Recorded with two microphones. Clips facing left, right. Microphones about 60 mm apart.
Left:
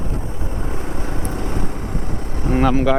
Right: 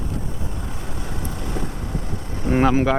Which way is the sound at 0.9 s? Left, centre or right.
Left.